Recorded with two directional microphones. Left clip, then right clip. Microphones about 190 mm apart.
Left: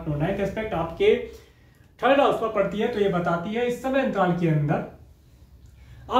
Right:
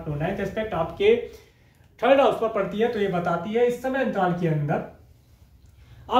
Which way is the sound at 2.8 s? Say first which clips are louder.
Even; 15° right (ahead or behind).